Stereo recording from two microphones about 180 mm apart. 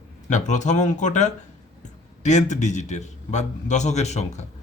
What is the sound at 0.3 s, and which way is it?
Speech, 40° left (ahead or behind).